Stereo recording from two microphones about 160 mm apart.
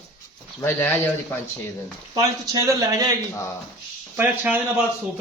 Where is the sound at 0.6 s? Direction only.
15° left (ahead or behind).